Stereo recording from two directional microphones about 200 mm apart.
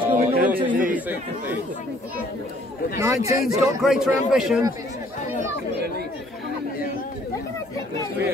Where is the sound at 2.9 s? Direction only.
15° right (ahead or behind).